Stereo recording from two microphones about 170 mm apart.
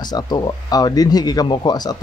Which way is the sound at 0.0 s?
25° left (ahead or behind).